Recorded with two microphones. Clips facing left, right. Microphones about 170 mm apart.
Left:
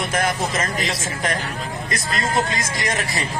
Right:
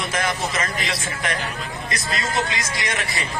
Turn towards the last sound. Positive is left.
turn(degrees=45)  # may be behind; listen again after turning